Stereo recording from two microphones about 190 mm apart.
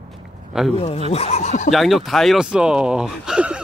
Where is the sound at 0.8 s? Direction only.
30° left (ahead or behind).